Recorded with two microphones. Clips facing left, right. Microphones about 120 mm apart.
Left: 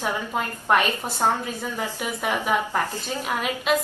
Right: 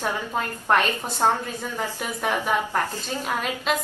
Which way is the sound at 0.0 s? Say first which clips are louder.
Even; 10° left (ahead or behind).